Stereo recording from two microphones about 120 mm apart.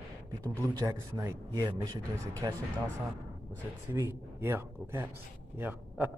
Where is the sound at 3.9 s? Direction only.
20° right (ahead or behind).